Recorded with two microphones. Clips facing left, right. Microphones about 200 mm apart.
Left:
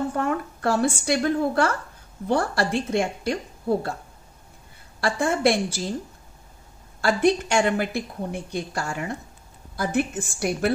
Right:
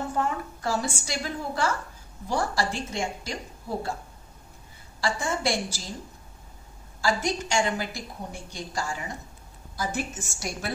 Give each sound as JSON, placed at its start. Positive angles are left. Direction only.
{"t": 0.1, "sound": "a woman's voice", "side_deg": 60}
{"t": 5.0, "sound": "a woman's voice", "side_deg": 60}
{"t": 7.0, "sound": "a woman's voice", "side_deg": 60}